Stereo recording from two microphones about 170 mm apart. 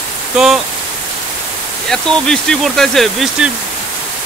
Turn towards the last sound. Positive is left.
turn(degrees=0)  # may be behind; listen again after turning